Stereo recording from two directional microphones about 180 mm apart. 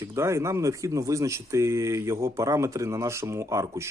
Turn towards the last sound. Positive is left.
turn(degrees=-15)  # may be behind; listen again after turning